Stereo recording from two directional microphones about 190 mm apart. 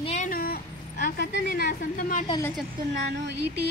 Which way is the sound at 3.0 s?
55° right (ahead or behind).